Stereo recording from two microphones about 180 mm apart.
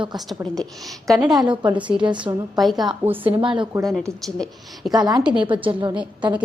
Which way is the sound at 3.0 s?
10° right (ahead or behind).